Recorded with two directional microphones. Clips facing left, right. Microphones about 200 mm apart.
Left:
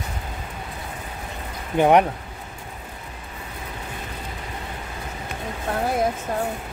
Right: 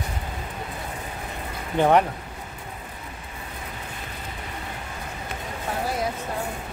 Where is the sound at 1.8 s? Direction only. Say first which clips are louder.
Left 3 dB; 15° left (ahead or behind).